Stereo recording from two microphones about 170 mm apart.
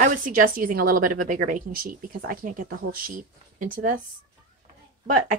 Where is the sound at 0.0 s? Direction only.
50° right (ahead or behind).